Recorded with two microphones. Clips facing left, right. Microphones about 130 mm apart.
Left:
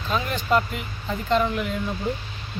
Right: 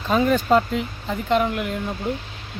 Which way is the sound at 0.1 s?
40° right (ahead or behind).